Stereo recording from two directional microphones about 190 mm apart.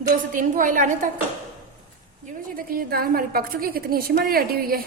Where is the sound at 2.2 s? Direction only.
50° right (ahead or behind).